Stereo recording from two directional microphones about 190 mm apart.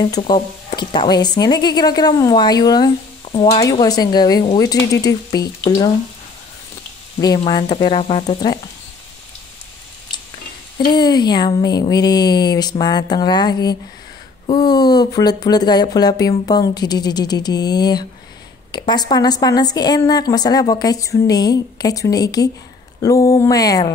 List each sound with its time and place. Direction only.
0.0 s a woman's voice: 20° left (ahead or behind)
3.3 s stir: 35° left (ahead or behind)
3.5 s a woman's voice: 20° left (ahead or behind)
7.2 s a woman's voice: 25° left (ahead or behind)
10.9 s a woman's voice: 20° left (ahead or behind)
23.0 s a sound: 15° left (ahead or behind)